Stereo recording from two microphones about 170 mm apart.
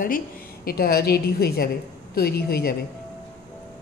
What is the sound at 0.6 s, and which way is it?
A woman's voice, 60° left (ahead or behind).